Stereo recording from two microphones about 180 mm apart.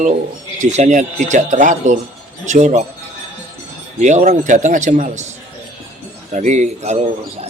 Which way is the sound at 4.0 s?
40° right (ahead or behind).